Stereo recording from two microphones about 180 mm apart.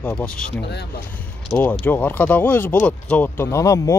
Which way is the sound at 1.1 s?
5° left (ahead or behind).